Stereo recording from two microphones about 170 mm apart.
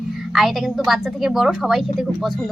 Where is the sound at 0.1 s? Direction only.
Centre (ahead or behind).